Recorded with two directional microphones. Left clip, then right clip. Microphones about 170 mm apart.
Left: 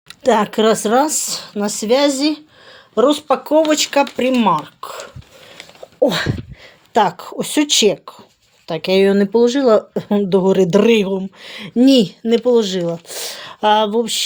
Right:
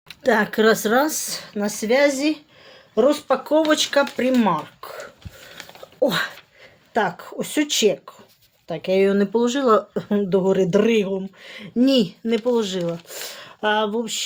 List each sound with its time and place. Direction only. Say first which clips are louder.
0.2 s speech: left 4 dB; 35° left (ahead or behind)
6.0 s speech: left 5 dB; 30° left (ahead or behind)
6.9 s speech: left 7 dB; 45° left (ahead or behind)